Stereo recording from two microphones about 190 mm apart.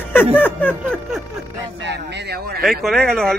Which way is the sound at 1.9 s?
60° right (ahead or behind).